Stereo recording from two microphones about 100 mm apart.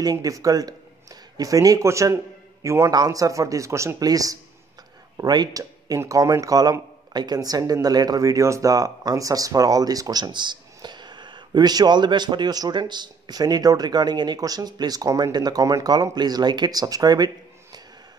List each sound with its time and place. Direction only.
0.0 s a man's voice: 40° right (ahead or behind)
2.9 s speech: 40° right (ahead or behind)